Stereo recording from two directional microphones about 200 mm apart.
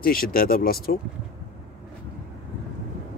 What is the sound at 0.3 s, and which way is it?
Speech, 45° left (ahead or behind).